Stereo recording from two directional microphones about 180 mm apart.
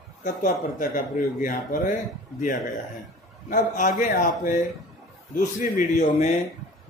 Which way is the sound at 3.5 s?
50° left (ahead or behind).